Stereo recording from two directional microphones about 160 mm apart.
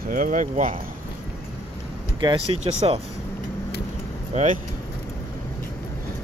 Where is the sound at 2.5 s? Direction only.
45° right (ahead or behind).